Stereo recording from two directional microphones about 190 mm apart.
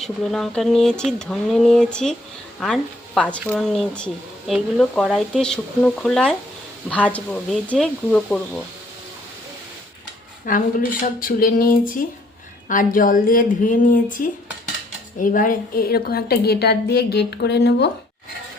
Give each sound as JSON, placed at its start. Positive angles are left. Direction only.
{"t": 0.0, "sound": "speech", "side_deg": 0}
{"t": 10.4, "sound": "a woman's voice", "side_deg": 45}